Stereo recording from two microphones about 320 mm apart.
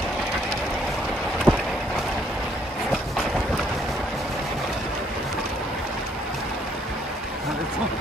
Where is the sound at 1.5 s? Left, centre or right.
Centre.